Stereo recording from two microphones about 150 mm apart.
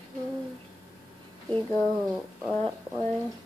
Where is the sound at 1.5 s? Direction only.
10° left (ahead or behind).